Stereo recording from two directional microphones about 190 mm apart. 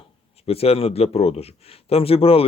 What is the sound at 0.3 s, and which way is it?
Speech, 30° left (ahead or behind).